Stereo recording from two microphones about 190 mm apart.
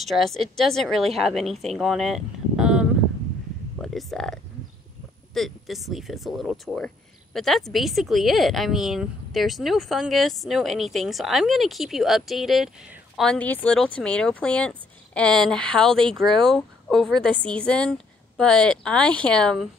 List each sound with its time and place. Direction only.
0.1 s a woman's voice: centre (ahead or behind)